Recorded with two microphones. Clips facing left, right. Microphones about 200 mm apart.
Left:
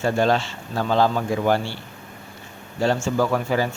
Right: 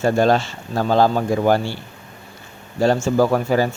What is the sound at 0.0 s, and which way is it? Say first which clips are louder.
Speech: right 4 dB; 40° right (ahead or behind).